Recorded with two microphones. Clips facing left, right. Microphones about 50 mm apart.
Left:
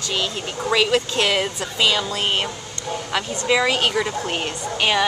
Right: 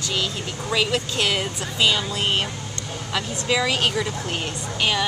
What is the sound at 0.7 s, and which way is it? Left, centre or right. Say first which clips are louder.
Speech: left 4 dB; left.